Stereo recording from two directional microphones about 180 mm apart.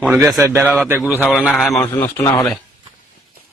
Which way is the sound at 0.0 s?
5° right (ahead or behind).